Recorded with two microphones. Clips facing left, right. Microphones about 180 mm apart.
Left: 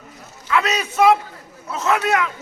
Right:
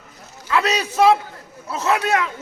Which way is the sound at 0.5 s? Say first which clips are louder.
Even; 35° right (ahead or behind).